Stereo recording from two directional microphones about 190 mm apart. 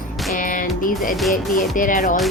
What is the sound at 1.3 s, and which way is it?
Speech, 45° left (ahead or behind).